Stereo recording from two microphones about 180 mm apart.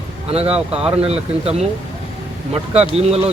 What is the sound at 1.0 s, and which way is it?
Speech, 35° right (ahead or behind).